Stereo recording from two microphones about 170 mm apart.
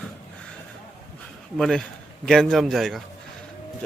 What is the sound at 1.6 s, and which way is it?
A man's voice, centre (ahead or behind).